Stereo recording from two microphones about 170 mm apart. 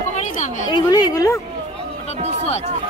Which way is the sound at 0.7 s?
25° left (ahead or behind).